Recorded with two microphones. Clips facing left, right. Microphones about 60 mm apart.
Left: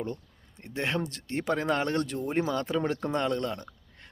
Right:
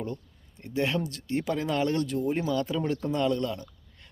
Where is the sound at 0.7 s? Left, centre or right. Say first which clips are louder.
Right 2 dB; left.